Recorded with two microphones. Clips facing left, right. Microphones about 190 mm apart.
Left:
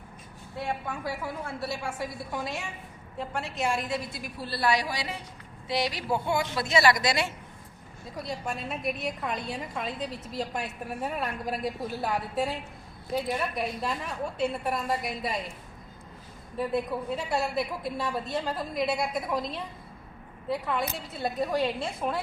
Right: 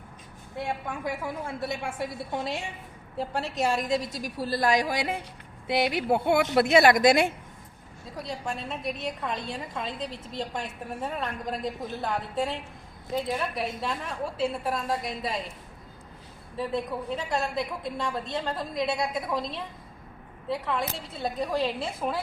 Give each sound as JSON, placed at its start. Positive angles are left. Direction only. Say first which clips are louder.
{"t": 0.5, "sound": "a woman's voice", "louder": "right 1 dB", "side_deg": -15}
{"t": 5.6, "sound": "a sound", "louder": "right 4 dB", "side_deg": -55}
{"t": 6.6, "sound": "a woman's voice", "louder": "right 6 dB", "side_deg": -55}
{"t": 8.4, "sound": "a woman's voice", "louder": "even", "side_deg": 5}
{"t": 16.6, "sound": "a woman's voice", "louder": "left 1 dB", "side_deg": 5}